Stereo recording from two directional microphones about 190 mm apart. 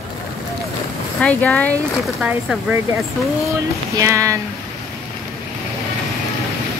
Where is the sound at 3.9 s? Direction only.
15° right (ahead or behind).